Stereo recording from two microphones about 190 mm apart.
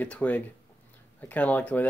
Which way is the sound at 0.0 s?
10° left (ahead or behind).